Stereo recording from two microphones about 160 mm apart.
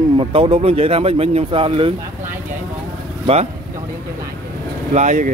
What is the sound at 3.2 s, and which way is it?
Speech, 40° right (ahead or behind).